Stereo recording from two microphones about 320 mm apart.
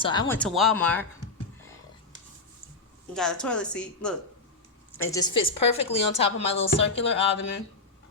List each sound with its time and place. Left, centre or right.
0.0 s speech: centre
3.2 s speech: centre
5.1 s speech: centre
6.9 s speech: left